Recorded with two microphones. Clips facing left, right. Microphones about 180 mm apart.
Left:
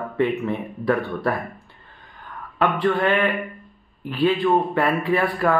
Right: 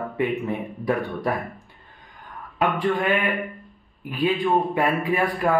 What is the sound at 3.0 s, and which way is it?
Speech, 10° right (ahead or behind).